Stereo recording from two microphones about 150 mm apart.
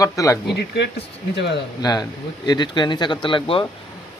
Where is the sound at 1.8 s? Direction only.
25° left (ahead or behind).